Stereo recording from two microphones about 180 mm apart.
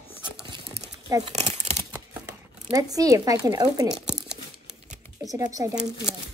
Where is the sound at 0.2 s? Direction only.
25° right (ahead or behind).